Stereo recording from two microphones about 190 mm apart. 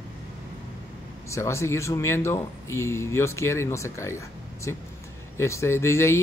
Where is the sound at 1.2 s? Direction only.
15° left (ahead or behind).